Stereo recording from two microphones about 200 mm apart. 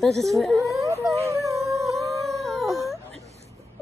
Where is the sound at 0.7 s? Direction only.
15° right (ahead or behind).